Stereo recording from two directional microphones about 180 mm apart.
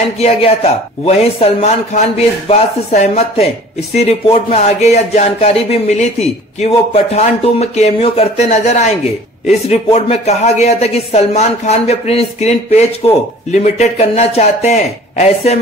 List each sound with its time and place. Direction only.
0.2 s speech: 35° left (ahead or behind)